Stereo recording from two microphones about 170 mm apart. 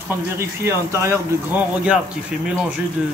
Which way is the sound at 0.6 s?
15° right (ahead or behind).